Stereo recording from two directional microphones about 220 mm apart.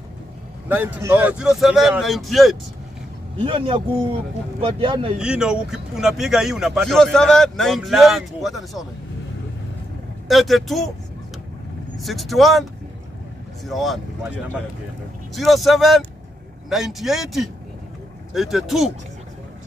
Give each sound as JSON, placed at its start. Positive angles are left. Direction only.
{"t": 0.7, "sound": "a man's voice", "side_deg": -10}
{"t": 3.3, "sound": "a man's voice", "side_deg": -25}
{"t": 5.2, "sound": "a man's voice", "side_deg": -5}
{"t": 10.2, "sound": "a man's voice", "side_deg": 0}
{"t": 12.0, "sound": "a man's voice", "side_deg": 0}
{"t": 13.7, "sound": "a man's voice", "side_deg": 0}
{"t": 15.3, "sound": "a man's voice", "side_deg": 0}